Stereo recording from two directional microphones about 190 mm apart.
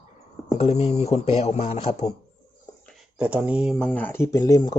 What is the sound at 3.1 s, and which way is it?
Speech, 5° right (ahead or behind).